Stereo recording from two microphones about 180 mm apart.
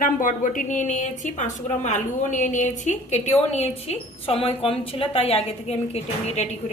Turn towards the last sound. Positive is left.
turn(degrees=35)  # may be behind; listen again after turning